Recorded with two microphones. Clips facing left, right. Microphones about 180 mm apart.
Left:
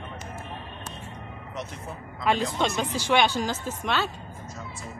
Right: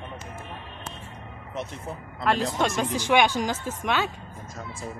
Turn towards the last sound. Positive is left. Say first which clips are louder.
# right 1 dB
turn(degrees=-10)  # may be behind; listen again after turning